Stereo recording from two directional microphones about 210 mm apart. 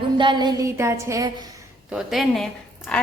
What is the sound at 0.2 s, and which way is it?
A woman's voice, 20° right (ahead or behind).